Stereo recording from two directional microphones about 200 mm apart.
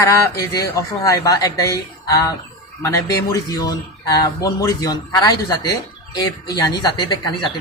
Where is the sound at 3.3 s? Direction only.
20° left (ahead or behind).